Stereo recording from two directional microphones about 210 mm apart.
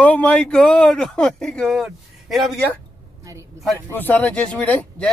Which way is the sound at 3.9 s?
10° left (ahead or behind).